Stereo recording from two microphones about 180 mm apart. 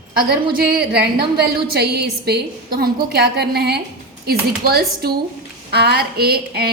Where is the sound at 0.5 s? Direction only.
60° right (ahead or behind).